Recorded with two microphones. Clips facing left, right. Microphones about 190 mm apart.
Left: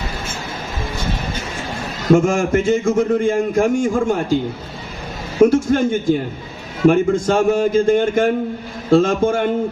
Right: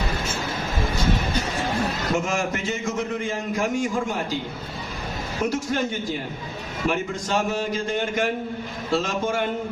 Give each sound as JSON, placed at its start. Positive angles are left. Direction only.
{"t": 2.1, "sound": "a man's voice", "side_deg": 50}
{"t": 5.5, "sound": "a man's voice", "side_deg": 50}